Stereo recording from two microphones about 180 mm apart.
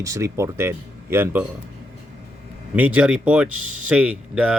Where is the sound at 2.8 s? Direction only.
10° right (ahead or behind).